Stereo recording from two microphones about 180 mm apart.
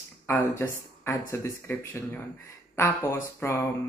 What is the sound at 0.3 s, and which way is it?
Speech, 15° left (ahead or behind).